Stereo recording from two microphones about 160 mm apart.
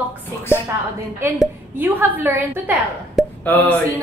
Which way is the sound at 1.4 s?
10° right (ahead or behind).